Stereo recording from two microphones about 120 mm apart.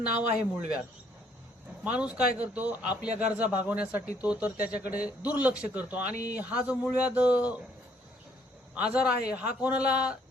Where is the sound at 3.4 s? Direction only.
15° right (ahead or behind).